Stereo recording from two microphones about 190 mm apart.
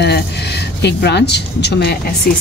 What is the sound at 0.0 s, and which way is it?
A woman's voice, 60° left (ahead or behind).